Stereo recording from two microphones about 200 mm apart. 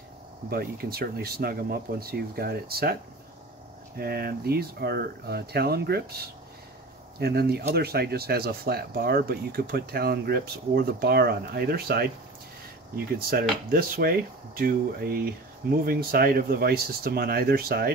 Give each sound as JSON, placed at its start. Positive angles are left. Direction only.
{"t": 0.5, "sound": "speech", "side_deg": -50}
{"t": 13.3, "sound": "speech", "side_deg": -45}